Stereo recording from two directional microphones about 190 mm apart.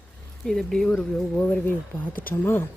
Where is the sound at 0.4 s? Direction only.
5° left (ahead or behind).